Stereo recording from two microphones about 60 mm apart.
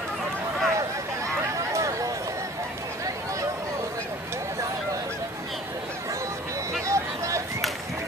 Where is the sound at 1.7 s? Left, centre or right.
Right.